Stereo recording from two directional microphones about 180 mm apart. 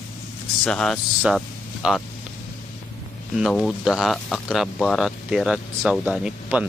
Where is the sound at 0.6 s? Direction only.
5° left (ahead or behind).